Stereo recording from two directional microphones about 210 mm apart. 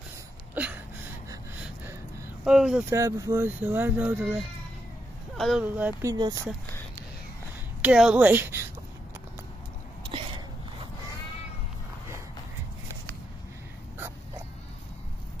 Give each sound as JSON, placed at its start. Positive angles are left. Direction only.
{"t": 0.6, "sound": "a sound", "side_deg": -10}
{"t": 2.4, "sound": "speech", "side_deg": -5}
{"t": 2.9, "sound": "speech", "side_deg": -15}
{"t": 5.4, "sound": "speech", "side_deg": -5}
{"t": 6.1, "sound": "speech", "side_deg": -20}
{"t": 7.8, "sound": "speech", "side_deg": -5}